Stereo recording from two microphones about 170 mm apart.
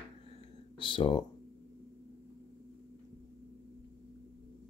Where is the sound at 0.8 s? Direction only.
30° left (ahead or behind).